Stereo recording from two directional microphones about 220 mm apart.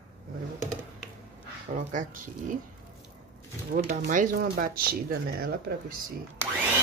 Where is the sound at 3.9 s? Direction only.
35° right (ahead or behind).